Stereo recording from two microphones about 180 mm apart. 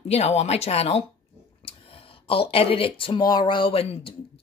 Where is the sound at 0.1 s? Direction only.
35° left (ahead or behind).